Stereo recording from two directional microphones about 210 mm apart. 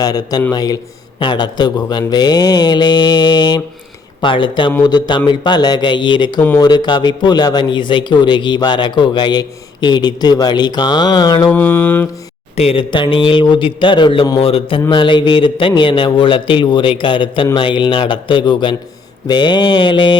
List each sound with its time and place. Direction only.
0.0 s speech: 20° left (ahead or behind)
0.5 s mantra: 20° left (ahead or behind)
1.2 s speech: 20° left (ahead or behind)
11.5 s mantra: 10° left (ahead or behind)
12.5 s speech: 25° left (ahead or behind)